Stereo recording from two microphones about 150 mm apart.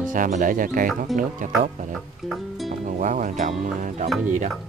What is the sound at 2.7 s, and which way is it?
Speech, 60° right (ahead or behind).